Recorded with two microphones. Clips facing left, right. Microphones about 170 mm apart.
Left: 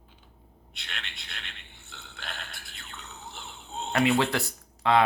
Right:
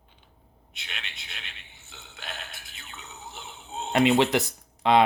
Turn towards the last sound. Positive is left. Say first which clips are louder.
# right 2 dB
turn(degrees=-20)  # may be behind; listen again after turning